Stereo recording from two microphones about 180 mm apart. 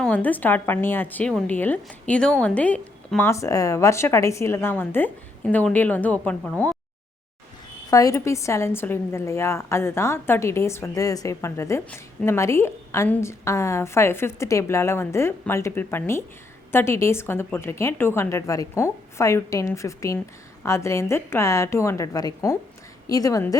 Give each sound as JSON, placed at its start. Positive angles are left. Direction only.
{"t": 0.0, "sound": "a woman's voice", "side_deg": 10}
{"t": 7.9, "sound": "a woman's voice", "side_deg": 20}